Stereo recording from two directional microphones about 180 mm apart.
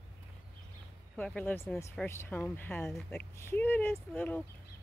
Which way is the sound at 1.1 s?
10° left (ahead or behind).